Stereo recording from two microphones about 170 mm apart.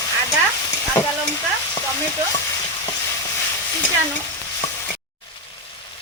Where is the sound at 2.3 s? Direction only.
20° left (ahead or behind).